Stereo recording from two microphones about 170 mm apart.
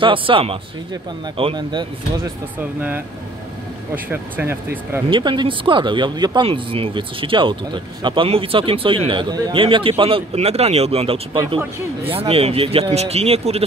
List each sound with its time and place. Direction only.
0.0 s speech: 30° right (ahead or behind)
3.9 s speech: 10° right (ahead or behind)
5.1 s speech: 30° right (ahead or behind)